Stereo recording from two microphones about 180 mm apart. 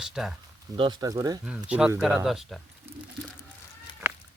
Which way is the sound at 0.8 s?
25° right (ahead or behind).